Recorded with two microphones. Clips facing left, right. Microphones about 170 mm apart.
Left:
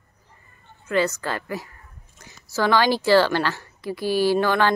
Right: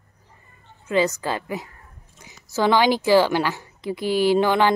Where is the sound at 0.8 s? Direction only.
15° right (ahead or behind).